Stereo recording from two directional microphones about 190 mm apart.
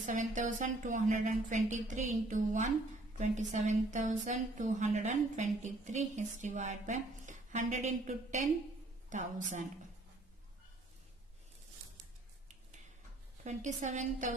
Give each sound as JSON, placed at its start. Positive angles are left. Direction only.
{"t": 0.0, "sound": "a woman's voice", "side_deg": -40}
{"t": 13.4, "sound": "a woman's voice", "side_deg": -40}